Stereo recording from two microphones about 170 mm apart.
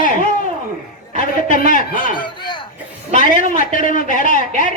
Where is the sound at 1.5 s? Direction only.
50° left (ahead or behind).